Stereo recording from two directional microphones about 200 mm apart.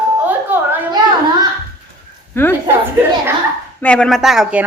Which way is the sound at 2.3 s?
10° left (ahead or behind).